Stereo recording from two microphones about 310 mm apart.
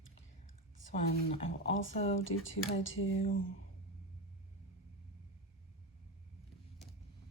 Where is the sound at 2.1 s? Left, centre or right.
Left.